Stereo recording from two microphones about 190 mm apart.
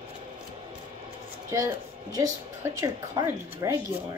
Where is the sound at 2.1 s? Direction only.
15° right (ahead or behind).